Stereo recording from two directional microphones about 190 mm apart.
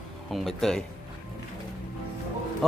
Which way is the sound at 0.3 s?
Centre (ahead or behind).